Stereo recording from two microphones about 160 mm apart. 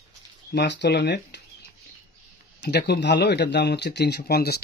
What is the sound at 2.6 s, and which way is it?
A man's voice, 90° left.